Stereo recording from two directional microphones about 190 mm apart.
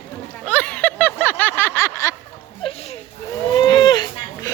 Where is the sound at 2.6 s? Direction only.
25° left (ahead or behind).